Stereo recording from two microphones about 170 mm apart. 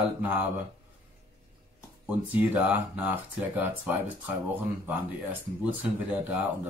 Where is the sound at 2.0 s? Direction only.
10° right (ahead or behind).